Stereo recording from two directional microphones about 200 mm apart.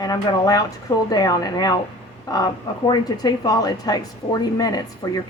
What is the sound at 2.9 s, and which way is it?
A woman's voice, 20° left (ahead or behind).